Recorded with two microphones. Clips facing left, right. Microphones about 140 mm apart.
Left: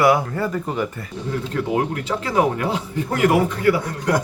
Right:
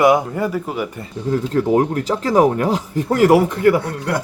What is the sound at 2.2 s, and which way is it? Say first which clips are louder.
Speech: right 5 dB; 40° right (ahead or behind).